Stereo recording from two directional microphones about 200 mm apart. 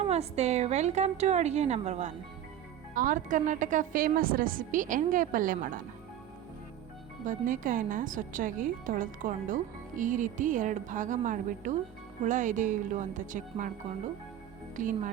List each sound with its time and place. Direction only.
0.1 s a woman's voice: 30° right (ahead or behind)
7.3 s a woman's voice: 45° right (ahead or behind)
14.8 s a woman's voice: 40° right (ahead or behind)